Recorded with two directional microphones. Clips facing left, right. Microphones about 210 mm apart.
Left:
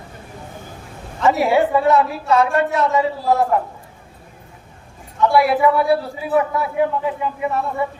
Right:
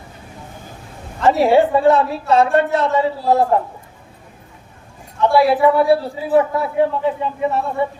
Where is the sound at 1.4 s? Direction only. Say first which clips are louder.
Right 5 dB; 30° right (ahead or behind).